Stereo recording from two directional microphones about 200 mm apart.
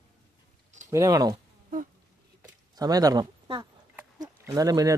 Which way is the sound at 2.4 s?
20° right (ahead or behind).